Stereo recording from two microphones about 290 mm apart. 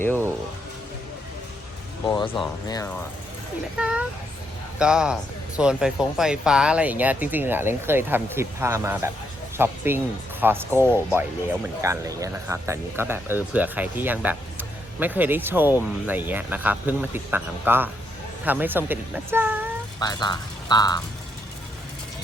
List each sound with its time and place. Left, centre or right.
2.0 s speech: centre
3.8 s speech: centre
20.0 s speech: centre